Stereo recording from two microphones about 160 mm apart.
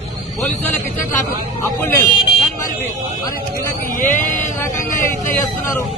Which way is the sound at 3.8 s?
55° left (ahead or behind).